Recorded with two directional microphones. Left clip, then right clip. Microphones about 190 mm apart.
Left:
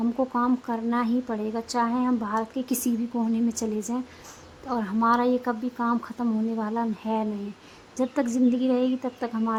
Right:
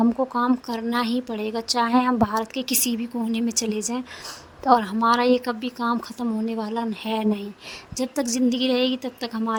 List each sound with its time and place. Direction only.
0.0 s a woman's voice: 35° right (ahead or behind)
8.0 s a woman's voice: 5° left (ahead or behind)
8.3 s a woman's voice: 50° right (ahead or behind)